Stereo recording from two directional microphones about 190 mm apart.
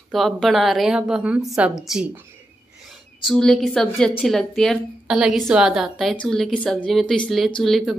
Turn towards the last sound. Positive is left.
turn(degrees=0)  # may be behind; listen again after turning